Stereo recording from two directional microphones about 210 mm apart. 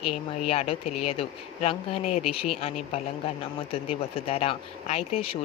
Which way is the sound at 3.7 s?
25° left (ahead or behind).